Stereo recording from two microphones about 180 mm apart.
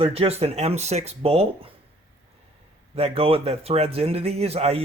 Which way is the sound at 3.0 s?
35° right (ahead or behind).